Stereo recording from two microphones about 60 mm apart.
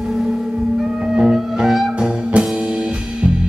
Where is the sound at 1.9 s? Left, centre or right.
Centre.